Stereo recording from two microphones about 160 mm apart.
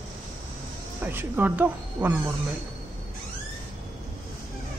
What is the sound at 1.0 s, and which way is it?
Speech, 10° right (ahead or behind).